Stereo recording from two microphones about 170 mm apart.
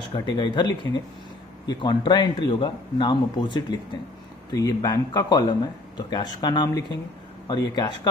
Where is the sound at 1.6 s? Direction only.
25° left (ahead or behind).